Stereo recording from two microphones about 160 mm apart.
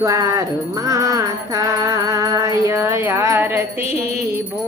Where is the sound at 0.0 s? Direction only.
20° right (ahead or behind).